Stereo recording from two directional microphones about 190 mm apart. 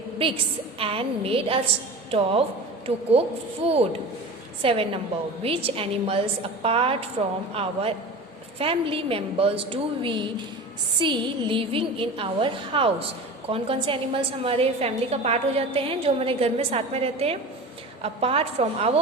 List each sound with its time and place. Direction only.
0.8 s a woman's voice: 30° right (ahead or behind)